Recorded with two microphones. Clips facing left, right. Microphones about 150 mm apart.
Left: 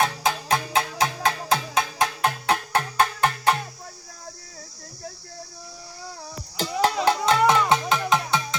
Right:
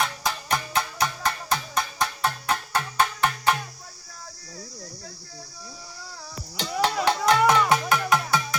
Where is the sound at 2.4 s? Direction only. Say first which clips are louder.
Left 3 dB; 70° left (ahead or behind).